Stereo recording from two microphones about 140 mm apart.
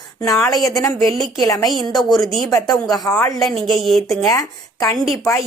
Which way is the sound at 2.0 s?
Centre (ahead or behind).